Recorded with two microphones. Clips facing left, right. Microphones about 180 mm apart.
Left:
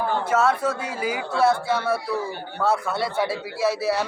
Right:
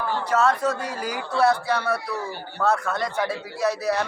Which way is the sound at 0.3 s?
5° left (ahead or behind).